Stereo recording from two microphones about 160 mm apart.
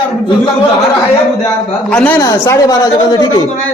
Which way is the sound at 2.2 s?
20° left (ahead or behind).